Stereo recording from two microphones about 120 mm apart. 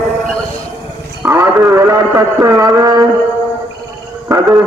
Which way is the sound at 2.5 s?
30° right (ahead or behind).